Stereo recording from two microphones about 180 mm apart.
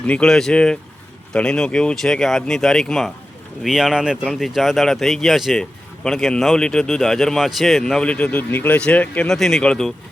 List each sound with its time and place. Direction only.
0.1 s speech: 5° left (ahead or behind)